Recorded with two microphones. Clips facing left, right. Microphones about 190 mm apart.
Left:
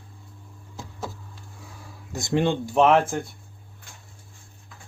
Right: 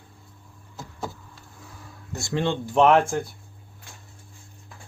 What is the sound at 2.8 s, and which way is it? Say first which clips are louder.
Speech: right 1 dB; centre (ahead or behind).